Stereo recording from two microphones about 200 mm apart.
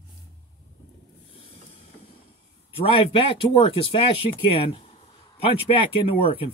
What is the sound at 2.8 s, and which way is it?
Speech, 25° left (ahead or behind).